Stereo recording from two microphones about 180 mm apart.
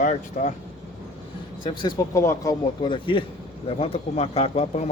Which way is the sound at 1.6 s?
25° left (ahead or behind).